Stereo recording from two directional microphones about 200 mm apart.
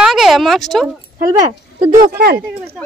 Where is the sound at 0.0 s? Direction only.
Centre (ahead or behind).